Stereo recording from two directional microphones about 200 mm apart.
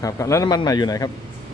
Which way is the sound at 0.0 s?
15° left (ahead or behind).